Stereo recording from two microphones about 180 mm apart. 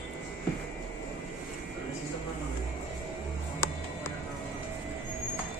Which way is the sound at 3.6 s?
15° left (ahead or behind).